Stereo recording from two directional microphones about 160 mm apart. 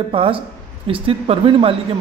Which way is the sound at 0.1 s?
35° right (ahead or behind).